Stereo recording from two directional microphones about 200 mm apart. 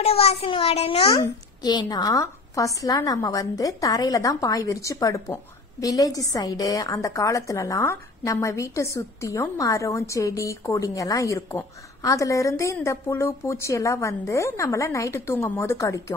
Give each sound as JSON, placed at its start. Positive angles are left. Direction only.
{"t": 0.0, "sound": "a child's voice", "side_deg": 30}